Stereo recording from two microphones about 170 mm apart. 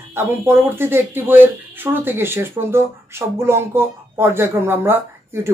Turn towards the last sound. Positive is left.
turn(degrees=-15)  # may be behind; listen again after turning